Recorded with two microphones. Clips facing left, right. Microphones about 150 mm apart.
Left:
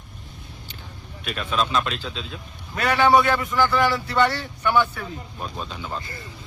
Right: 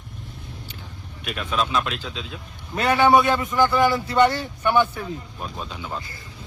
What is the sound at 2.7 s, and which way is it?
A man's voice, 20° right (ahead or behind).